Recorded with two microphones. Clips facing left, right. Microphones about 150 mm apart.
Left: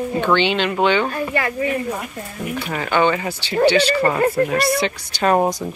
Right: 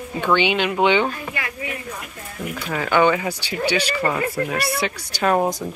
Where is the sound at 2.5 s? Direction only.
20° left (ahead or behind).